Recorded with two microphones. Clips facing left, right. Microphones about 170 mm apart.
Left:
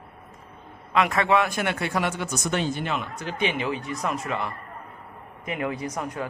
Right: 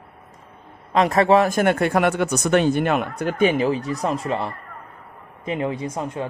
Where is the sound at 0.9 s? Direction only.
35° right (ahead or behind).